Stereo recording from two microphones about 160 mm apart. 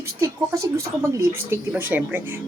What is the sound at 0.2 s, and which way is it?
A woman's voice, 20° right (ahead or behind).